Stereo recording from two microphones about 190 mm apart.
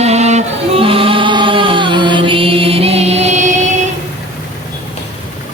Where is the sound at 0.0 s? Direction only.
35° right (ahead or behind).